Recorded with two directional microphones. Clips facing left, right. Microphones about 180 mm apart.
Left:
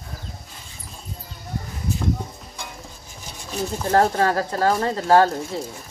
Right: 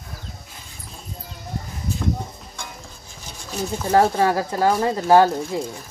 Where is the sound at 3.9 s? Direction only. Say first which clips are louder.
Right 1 dB; 10° right (ahead or behind).